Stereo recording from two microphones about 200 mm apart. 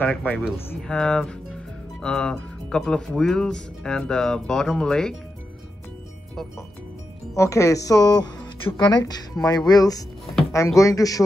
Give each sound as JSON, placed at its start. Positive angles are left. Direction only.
{"t": 0.0, "sound": "speech", "side_deg": 5}
{"t": 7.3, "sound": "speech", "side_deg": 15}